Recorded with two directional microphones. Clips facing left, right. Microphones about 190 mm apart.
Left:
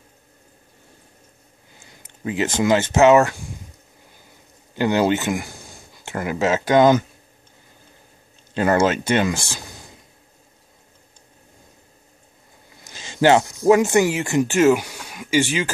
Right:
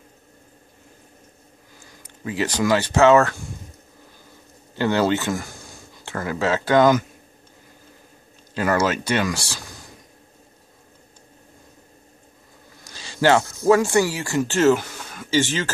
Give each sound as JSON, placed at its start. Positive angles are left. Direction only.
{"t": 1.8, "sound": "speech", "side_deg": 25}
{"t": 4.7, "sound": "speech", "side_deg": 15}
{"t": 8.5, "sound": "speech", "side_deg": 25}
{"t": 12.8, "sound": "speech", "side_deg": 20}